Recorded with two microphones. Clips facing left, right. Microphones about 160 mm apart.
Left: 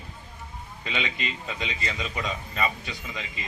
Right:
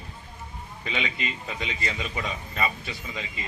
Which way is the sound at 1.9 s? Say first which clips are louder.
Left 1 dB; 15° right (ahead or behind).